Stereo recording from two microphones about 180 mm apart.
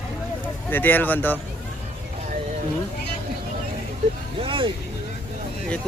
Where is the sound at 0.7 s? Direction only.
10° left (ahead or behind).